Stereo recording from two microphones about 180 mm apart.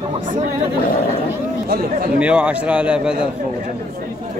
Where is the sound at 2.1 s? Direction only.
5° right (ahead or behind).